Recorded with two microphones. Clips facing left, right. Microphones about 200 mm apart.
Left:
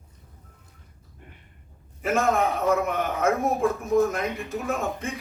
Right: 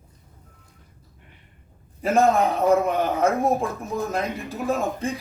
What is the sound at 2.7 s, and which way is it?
A man's voice, 30° right (ahead or behind).